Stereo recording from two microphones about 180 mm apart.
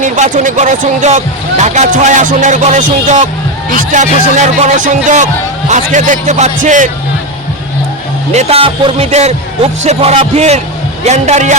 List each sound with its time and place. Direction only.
0.0 s speech: 45° right (ahead or behind)
8.3 s speech: 35° right (ahead or behind)